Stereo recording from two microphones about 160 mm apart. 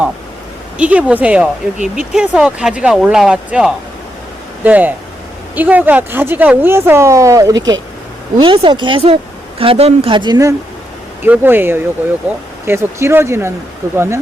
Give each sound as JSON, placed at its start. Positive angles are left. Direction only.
{"t": 0.8, "sound": "speech", "side_deg": -10}
{"t": 11.2, "sound": "speech", "side_deg": -10}